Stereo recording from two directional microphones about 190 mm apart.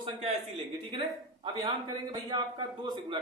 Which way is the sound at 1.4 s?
20° right (ahead or behind).